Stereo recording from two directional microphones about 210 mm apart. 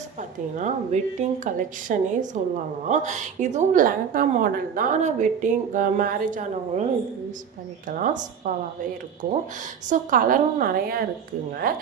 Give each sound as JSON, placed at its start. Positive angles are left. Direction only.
{"t": 0.2, "sound": "a woman's voice", "side_deg": -35}
{"t": 7.9, "sound": "a woman's voice", "side_deg": -40}
{"t": 9.9, "sound": "a woman's voice", "side_deg": -40}